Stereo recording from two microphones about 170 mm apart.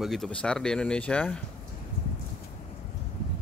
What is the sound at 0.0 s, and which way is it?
Speech, centre (ahead or behind).